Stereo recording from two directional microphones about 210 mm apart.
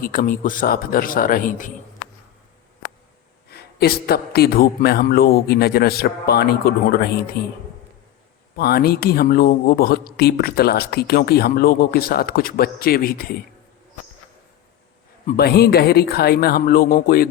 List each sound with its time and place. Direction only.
0.0 s a man's voice: 40° left (ahead or behind)
3.5 s speech: 50° left (ahead or behind)
8.5 s speech: 45° left (ahead or behind)
15.4 s speech: 50° left (ahead or behind)